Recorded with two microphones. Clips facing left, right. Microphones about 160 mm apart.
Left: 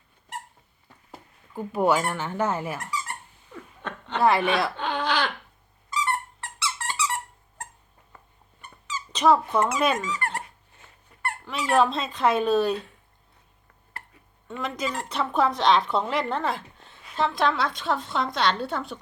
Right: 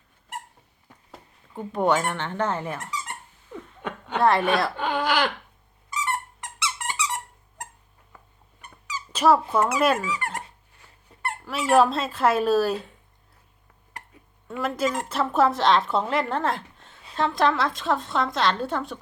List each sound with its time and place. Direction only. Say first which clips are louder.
1.1 s speech: left 1 dB; 5° left (ahead or behind)
2.9 s a sound: left 1 dB; 20° right (ahead or behind)
4.2 s speech: right 1 dB; centre (ahead or behind)
4.9 s a sound: right 4 dB; 10° right (ahead or behind)
6.1 s squeak: left 1 dB; 20° right (ahead or behind)
8.9 s squeak: right 1 dB; 10° right (ahead or behind)
9.5 s speech: right 2 dB; 5° right (ahead or behind)
11.4 s speech: right 3 dB; 5° right (ahead or behind)
14.4 s speech: right 4 dB; 5° right (ahead or behind)